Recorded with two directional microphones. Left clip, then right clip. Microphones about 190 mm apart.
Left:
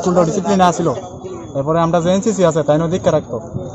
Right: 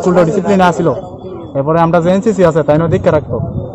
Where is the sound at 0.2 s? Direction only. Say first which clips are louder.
Right 3 dB; 30° right (ahead or behind).